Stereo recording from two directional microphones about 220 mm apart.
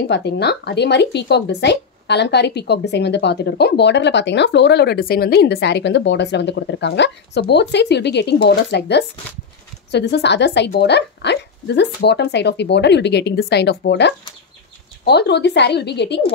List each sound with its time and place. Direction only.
0.1 s speech: 50° left (ahead or behind)